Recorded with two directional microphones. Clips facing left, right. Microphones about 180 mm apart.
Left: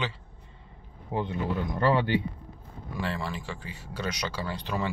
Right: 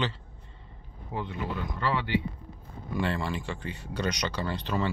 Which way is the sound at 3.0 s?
Centre (ahead or behind).